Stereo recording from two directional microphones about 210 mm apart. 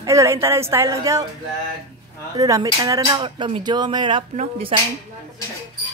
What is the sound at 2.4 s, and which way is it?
Speech, 15° right (ahead or behind).